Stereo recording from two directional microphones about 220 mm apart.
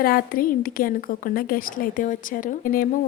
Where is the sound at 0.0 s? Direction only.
40° left (ahead or behind).